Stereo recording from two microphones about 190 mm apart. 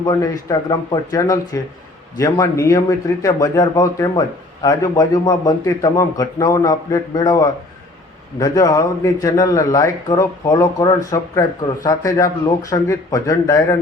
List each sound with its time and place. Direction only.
0.0 s a man's voice: 20° left (ahead or behind)